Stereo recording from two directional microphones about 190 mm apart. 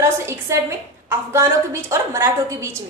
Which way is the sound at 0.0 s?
15° right (ahead or behind).